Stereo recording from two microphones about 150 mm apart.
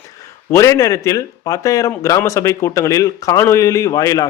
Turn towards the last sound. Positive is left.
turn(degrees=25)  # may be behind; listen again after turning